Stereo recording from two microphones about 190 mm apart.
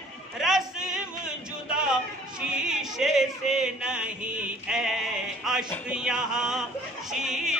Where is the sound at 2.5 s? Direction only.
5° right (ahead or behind).